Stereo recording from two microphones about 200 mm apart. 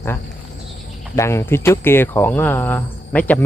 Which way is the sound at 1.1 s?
15° left (ahead or behind).